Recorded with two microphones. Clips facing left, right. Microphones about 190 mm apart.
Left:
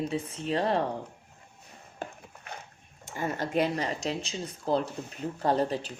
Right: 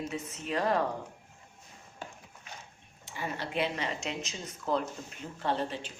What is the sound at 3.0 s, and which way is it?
Speech, 45° left (ahead or behind).